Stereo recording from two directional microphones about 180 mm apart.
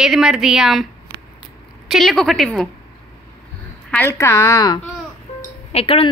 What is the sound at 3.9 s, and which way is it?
Speech, 10° left (ahead or behind).